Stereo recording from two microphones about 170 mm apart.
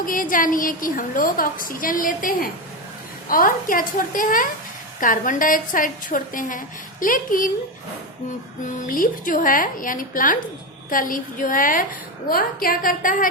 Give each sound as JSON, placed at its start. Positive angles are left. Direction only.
{"t": 0.0, "sound": "a woman's voice", "side_deg": 55}
{"t": 8.6, "sound": "a woman's voice", "side_deg": 50}